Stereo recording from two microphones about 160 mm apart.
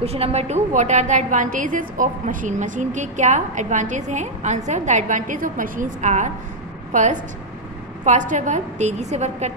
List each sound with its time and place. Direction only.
0.0 s a woman's voice: 40° right (ahead or behind)